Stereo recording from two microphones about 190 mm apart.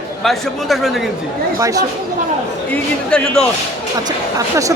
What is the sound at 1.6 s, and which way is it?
Speech, 15° right (ahead or behind).